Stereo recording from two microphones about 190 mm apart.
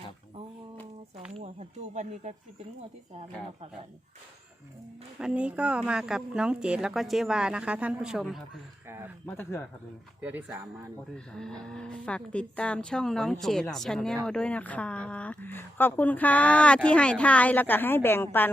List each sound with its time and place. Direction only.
1.4 s speech: 35° right (ahead or behind)
5.2 s speech: 5° right (ahead or behind)
8.9 s speech: 10° right (ahead or behind)
9.2 s speech: 10° left (ahead or behind)
10.2 s speech: 10° right (ahead or behind)
11.3 s speech: 5° left (ahead or behind)